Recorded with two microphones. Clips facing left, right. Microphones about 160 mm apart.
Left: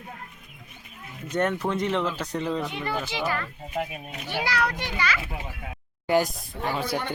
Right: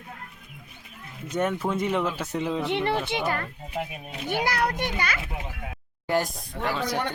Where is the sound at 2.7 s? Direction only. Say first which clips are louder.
Right 7 dB; 70° right (ahead or behind).